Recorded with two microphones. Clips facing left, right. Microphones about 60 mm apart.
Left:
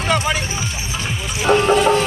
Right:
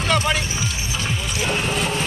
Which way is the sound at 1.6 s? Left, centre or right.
Left.